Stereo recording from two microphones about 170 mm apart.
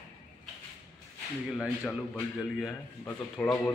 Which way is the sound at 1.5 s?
Centre (ahead or behind).